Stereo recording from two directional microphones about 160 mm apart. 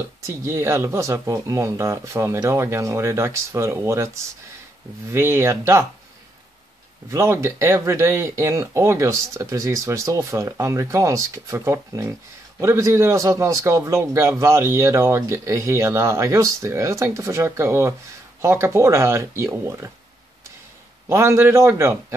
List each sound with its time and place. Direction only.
0.4 s a man's voice: 15° right (ahead or behind)
7.1 s a man's voice: 20° right (ahead or behind)
21.1 s a man's voice: 15° right (ahead or behind)